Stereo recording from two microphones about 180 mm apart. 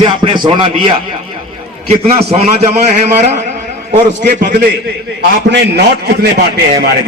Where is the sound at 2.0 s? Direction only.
35° right (ahead or behind).